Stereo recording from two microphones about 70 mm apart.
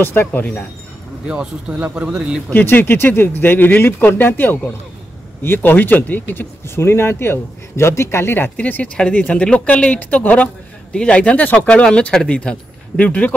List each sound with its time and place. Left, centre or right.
0.0 s a man's voice: left
1.2 s speech: centre
2.5 s a man's voice: left
8.5 s a man's voice: left